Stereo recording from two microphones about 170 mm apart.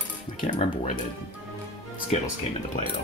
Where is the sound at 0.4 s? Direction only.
45° left (ahead or behind).